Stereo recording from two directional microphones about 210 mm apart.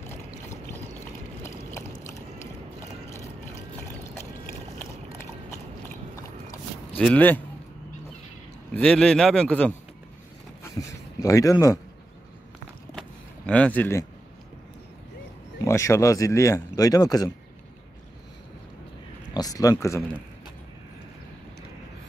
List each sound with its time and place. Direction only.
1.4 s a sound: 10° left (ahead or behind)
4.7 s a sound: 10° left (ahead or behind)
7.0 s speech: 5° left (ahead or behind)
8.7 s a man's voice: 5° left (ahead or behind)
13.5 s speech: 5° left (ahead or behind)
15.6 s speech: 15° left (ahead or behind)
19.3 s speech: 15° left (ahead or behind)